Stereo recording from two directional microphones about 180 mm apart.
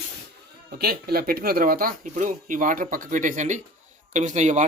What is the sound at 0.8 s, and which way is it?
Speech, 60° right (ahead or behind).